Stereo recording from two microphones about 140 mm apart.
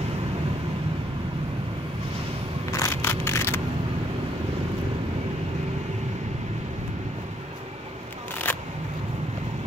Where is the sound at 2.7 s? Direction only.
20° left (ahead or behind).